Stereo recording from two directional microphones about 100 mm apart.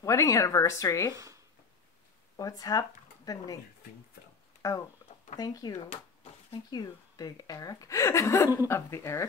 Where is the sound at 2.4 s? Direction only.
40° left (ahead or behind).